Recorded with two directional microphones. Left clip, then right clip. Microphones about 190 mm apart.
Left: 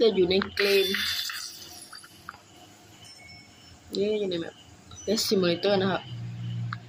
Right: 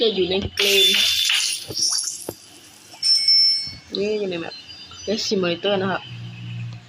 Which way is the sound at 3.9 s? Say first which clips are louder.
Right 4 dB; 5° left (ahead or behind).